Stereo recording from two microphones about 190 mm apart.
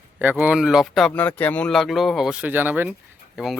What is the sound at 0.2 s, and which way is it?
Speech, 10° right (ahead or behind).